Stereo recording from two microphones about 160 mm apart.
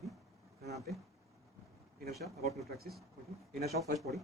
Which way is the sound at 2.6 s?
75° right (ahead or behind).